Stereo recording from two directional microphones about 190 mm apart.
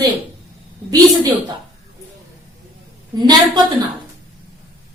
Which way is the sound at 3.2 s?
20° right (ahead or behind).